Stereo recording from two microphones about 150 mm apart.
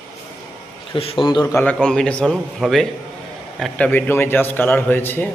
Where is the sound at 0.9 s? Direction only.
35° left (ahead or behind).